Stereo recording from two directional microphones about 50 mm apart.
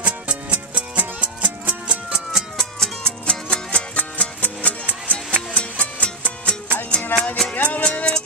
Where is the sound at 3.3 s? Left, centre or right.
Centre.